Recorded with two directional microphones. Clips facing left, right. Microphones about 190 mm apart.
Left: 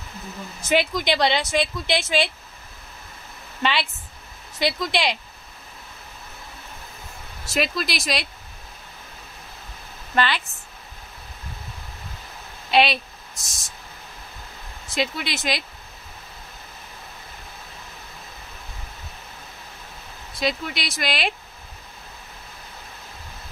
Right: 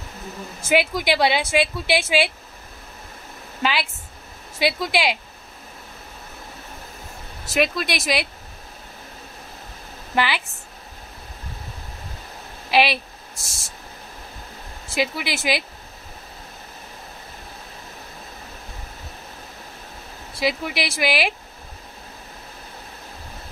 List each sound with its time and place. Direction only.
0.7 s speech: 5° right (ahead or behind)
3.6 s speech: 5° right (ahead or behind)
7.5 s speech: centre (ahead or behind)
10.1 s speech: 10° right (ahead or behind)
12.7 s speech: 5° right (ahead or behind)
13.3 s a sound: 30° right (ahead or behind)
15.0 s speech: 5° right (ahead or behind)
20.3 s speech: 5° right (ahead or behind)